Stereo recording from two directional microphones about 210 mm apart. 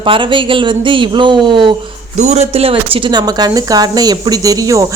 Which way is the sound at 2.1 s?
35° right (ahead or behind).